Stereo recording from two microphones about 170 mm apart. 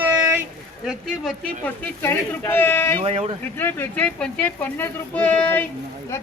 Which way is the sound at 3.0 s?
35° right (ahead or behind).